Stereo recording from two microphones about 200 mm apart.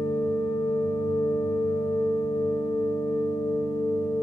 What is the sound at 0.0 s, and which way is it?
Singing bowl, 20° left (ahead or behind).